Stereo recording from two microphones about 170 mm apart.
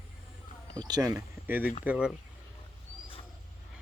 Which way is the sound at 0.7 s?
20° right (ahead or behind).